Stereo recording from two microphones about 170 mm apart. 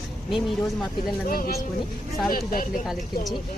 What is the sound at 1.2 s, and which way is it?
Speech, 60° left (ahead or behind).